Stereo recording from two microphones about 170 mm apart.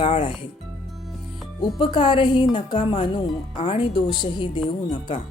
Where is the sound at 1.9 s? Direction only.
30° left (ahead or behind).